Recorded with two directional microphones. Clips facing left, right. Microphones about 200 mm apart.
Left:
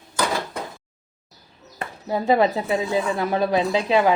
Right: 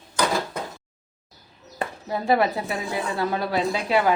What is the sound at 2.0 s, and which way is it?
A woman's voice, 20° left (ahead or behind).